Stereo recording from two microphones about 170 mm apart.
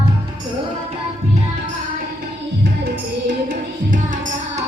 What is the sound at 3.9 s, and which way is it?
Music, 50° right (ahead or behind).